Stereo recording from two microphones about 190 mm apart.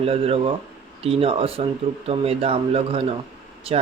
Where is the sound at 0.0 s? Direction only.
30° right (ahead or behind).